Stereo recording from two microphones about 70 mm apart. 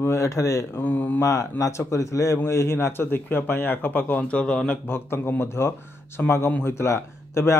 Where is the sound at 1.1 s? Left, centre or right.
Left; by 4.8 s centre.